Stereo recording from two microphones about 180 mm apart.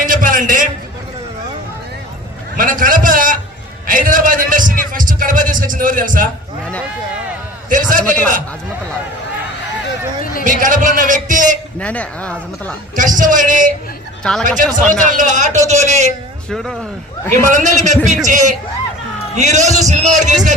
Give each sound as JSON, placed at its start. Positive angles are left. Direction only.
{"t": 0.0, "sound": "a sound", "side_deg": -50}
{"t": 2.6, "sound": "a sound", "side_deg": -50}
{"t": 7.7, "sound": "a man's voice", "side_deg": -50}
{"t": 10.4, "sound": "a man's voice", "side_deg": -45}
{"t": 11.8, "sound": "a woman's voice", "side_deg": 5}
{"t": 13.0, "sound": "a man's voice", "side_deg": -45}
{"t": 14.3, "sound": "speech", "side_deg": 5}
{"t": 15.0, "sound": "a man's voice", "side_deg": -45}
{"t": 16.5, "sound": "speech", "side_deg": 5}
{"t": 17.8, "sound": "a man's voice", "side_deg": -40}